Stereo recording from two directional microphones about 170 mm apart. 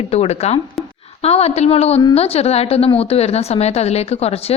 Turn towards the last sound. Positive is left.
turn(degrees=35)  # may be behind; listen again after turning